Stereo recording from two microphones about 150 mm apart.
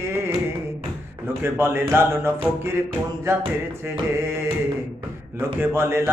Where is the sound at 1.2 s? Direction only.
15° right (ahead or behind).